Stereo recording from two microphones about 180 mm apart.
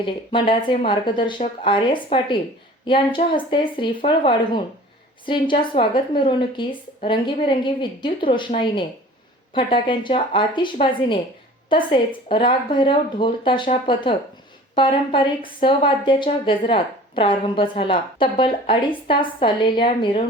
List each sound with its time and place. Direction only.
0.0 s speech: 30° left (ahead or behind)